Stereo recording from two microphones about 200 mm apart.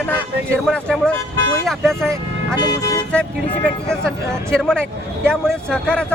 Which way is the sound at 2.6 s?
20° left (ahead or behind).